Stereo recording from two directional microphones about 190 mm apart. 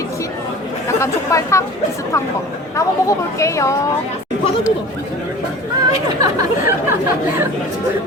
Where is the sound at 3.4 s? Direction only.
15° left (ahead or behind).